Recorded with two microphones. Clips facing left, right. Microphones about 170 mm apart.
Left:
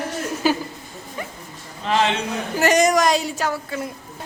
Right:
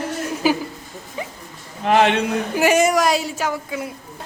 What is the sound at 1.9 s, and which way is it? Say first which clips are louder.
Speech: right 5 dB; 60° right (ahead or behind).